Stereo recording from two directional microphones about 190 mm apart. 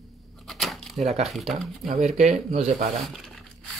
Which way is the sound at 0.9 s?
35° right (ahead or behind).